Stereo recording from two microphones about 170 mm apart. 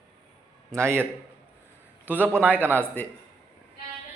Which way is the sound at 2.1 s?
10° right (ahead or behind).